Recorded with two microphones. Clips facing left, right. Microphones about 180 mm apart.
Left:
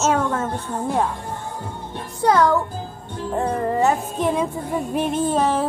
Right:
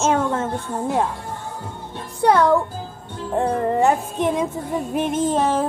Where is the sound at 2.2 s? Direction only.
30° right (ahead or behind).